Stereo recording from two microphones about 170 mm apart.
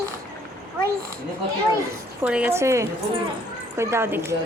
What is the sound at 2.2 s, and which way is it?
A woman's voice, 10° right (ahead or behind).